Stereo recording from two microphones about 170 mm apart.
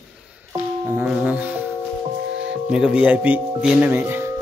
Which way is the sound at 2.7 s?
5° right (ahead or behind).